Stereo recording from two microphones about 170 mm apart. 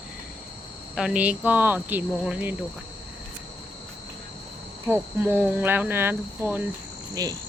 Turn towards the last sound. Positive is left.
turn(degrees=-20)  # may be behind; listen again after turning